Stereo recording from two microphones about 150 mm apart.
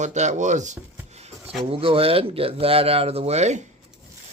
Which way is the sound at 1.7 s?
40° right (ahead or behind).